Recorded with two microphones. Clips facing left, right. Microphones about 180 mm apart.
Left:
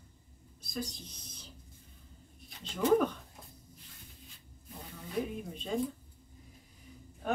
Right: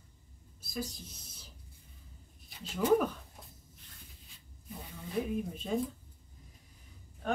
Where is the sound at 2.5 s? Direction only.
5° right (ahead or behind).